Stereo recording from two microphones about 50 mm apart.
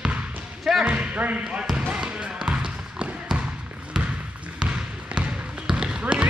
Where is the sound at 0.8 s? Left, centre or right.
Right.